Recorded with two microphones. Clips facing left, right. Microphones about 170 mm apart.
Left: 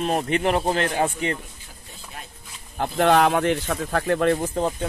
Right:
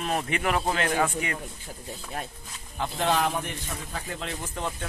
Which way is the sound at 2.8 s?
60° left (ahead or behind).